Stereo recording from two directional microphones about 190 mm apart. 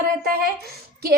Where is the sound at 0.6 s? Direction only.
55° right (ahead or behind).